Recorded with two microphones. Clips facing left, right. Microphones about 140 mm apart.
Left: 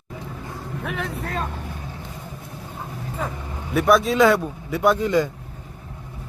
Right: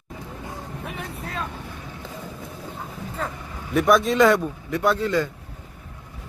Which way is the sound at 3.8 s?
Centre (ahead or behind).